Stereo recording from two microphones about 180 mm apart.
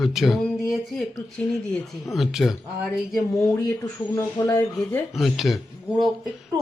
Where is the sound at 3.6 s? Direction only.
15° left (ahead or behind).